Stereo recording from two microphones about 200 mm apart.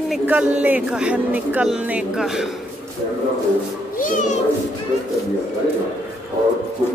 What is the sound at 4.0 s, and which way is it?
Speech, 40° left (ahead or behind).